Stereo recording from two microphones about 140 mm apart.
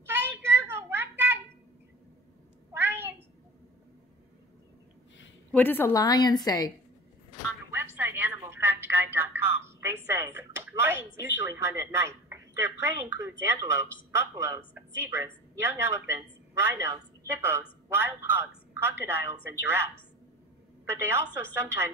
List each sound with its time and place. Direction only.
0.0 s a sound: 15° right (ahead or behind)
2.7 s a sound: 15° right (ahead or behind)
5.5 s a woman's voice: 15° left (ahead or behind)
5.9 s a woman's voice: 25° left (ahead or behind)
7.7 s a woman's voice: 15° right (ahead or behind)
20.9 s a woman's voice: 20° right (ahead or behind)